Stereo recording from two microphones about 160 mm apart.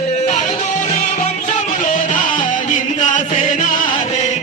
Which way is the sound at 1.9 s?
55° left (ahead or behind).